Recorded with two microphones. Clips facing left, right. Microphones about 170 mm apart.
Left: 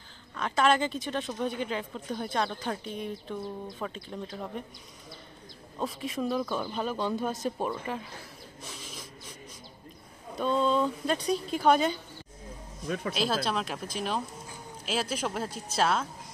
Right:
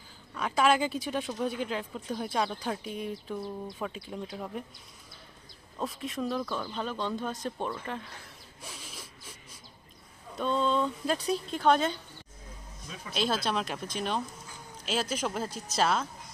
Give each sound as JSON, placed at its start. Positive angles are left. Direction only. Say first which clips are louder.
{"t": 0.3, "sound": "speech", "louder": "even", "side_deg": -5}
{"t": 5.8, "sound": "speech", "louder": "left 2 dB", "side_deg": 0}
{"t": 8.6, "sound": "a sound", "louder": "left 1 dB", "side_deg": 0}
{"t": 10.3, "sound": "speech", "louder": "left 2 dB", "side_deg": 0}
{"t": 12.8, "sound": "speech", "louder": "left 13 dB", "side_deg": 60}
{"t": 13.1, "sound": "speech", "louder": "right 2 dB", "side_deg": 0}